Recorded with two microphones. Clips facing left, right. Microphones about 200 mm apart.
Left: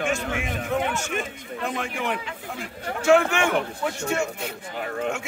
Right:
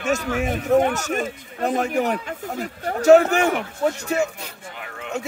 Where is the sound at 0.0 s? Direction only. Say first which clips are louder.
Right 4 dB; 40° right (ahead or behind).